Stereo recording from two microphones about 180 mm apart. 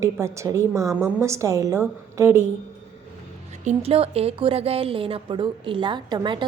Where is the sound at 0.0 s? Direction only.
15° right (ahead or behind).